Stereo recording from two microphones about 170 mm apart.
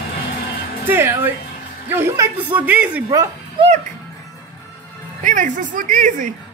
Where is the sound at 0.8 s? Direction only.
10° right (ahead or behind).